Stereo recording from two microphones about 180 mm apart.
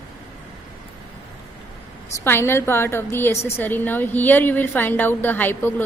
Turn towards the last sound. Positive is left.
turn(degrees=10)  # may be behind; listen again after turning